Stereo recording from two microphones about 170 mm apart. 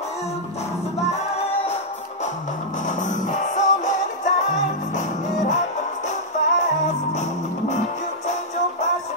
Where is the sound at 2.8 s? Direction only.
45° left (ahead or behind).